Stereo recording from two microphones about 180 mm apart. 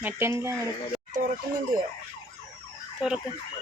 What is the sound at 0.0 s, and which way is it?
Speech, 15° right (ahead or behind).